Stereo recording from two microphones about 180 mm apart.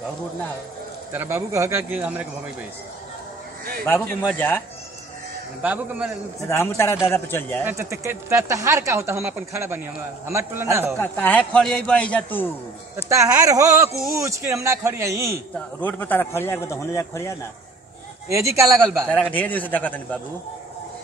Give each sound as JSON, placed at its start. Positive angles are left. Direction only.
{"t": 1.1, "sound": "speech", "side_deg": -15}
{"t": 4.2, "sound": "a man's voice", "side_deg": 10}
{"t": 5.6, "sound": "speech", "side_deg": -10}
{"t": 6.4, "sound": "a man's voice", "side_deg": 15}
{"t": 7.6, "sound": "speech", "side_deg": -15}
{"t": 11.0, "sound": "a man's voice", "side_deg": 10}
{"t": 12.9, "sound": "speech", "side_deg": -15}
{"t": 15.5, "sound": "a man's voice", "side_deg": 10}
{"t": 18.3, "sound": "speech", "side_deg": -15}
{"t": 18.9, "sound": "a man's voice", "side_deg": 5}